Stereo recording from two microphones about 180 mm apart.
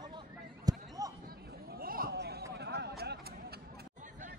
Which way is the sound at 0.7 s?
20° right (ahead or behind).